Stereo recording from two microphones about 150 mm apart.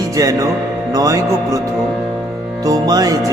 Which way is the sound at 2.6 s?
25° right (ahead or behind).